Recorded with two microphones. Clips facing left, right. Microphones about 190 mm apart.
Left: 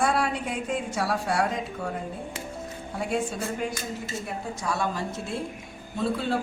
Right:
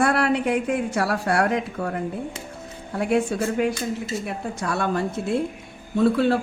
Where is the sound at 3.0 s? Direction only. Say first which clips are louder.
Right 7 dB; 65° right (ahead or behind).